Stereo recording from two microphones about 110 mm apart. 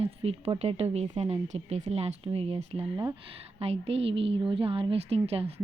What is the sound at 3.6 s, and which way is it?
Speech, 65° right (ahead or behind).